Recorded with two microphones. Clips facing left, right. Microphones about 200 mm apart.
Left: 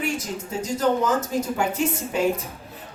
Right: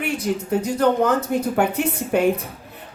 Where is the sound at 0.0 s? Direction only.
60° right (ahead or behind).